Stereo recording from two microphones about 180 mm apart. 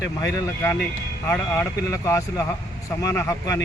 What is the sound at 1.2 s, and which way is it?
Speech, 15° left (ahead or behind).